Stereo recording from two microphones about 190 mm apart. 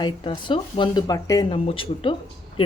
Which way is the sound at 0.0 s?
25° left (ahead or behind).